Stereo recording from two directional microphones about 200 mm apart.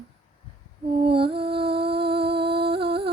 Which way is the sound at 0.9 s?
25° right (ahead or behind).